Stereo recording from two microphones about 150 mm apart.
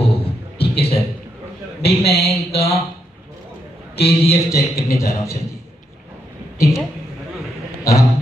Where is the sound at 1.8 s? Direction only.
40° left (ahead or behind).